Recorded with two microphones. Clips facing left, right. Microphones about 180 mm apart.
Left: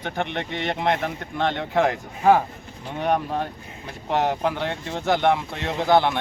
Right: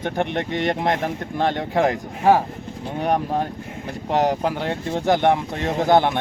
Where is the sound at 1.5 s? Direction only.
15° right (ahead or behind).